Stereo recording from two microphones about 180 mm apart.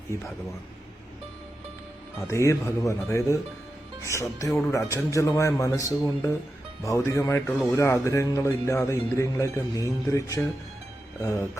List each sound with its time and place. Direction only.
2.2 s speech: 15° left (ahead or behind)
8.0 s speech: 15° left (ahead or behind)